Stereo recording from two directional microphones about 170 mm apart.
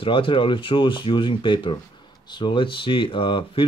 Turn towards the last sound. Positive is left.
turn(degrees=30)  # may be behind; listen again after turning